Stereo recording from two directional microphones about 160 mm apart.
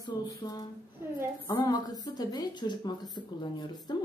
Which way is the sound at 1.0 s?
15° right (ahead or behind).